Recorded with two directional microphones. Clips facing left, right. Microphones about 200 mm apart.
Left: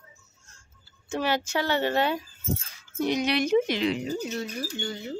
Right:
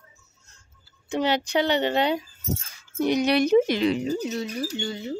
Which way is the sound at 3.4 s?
40° right (ahead or behind).